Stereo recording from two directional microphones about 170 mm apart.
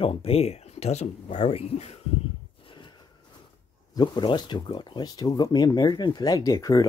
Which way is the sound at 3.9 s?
25° left (ahead or behind).